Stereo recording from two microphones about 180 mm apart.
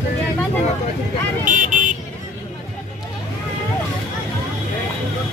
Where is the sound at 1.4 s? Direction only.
45° right (ahead or behind).